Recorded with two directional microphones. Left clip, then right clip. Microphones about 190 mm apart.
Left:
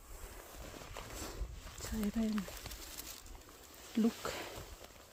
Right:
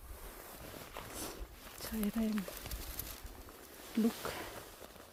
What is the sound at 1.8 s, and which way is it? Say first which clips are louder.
Speech: right 1 dB; 30° right (ahead or behind).